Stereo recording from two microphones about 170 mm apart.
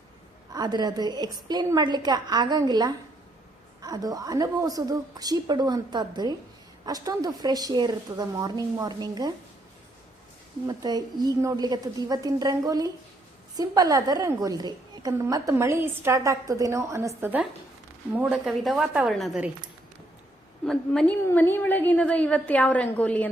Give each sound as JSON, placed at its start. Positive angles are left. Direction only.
{"t": 0.5, "sound": "a woman's voice", "side_deg": -25}
{"t": 10.7, "sound": "a woman's voice", "side_deg": -25}
{"t": 20.7, "sound": "a woman's voice", "side_deg": 5}